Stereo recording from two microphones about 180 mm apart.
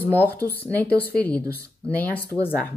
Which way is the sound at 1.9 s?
10° left (ahead or behind).